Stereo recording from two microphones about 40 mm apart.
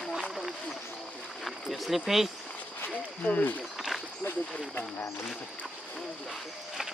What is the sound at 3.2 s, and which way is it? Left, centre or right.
Speech, left.